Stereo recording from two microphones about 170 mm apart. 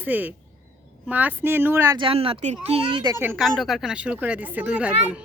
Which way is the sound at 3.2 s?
10° right (ahead or behind).